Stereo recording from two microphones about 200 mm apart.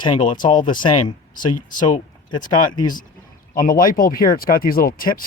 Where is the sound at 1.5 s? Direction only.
40° left (ahead or behind).